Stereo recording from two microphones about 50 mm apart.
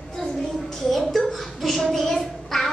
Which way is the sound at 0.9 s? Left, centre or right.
Centre.